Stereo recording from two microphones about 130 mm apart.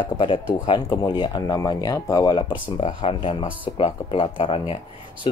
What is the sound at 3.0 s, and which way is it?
Speech, 45° left (ahead or behind).